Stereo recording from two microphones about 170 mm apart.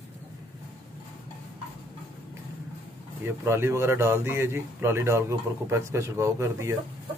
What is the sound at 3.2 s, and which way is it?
Speech, 15° right (ahead or behind).